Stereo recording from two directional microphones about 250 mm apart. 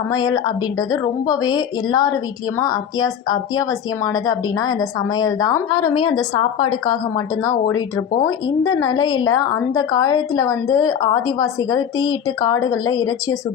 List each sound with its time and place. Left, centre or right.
0.1 s a woman's voice: centre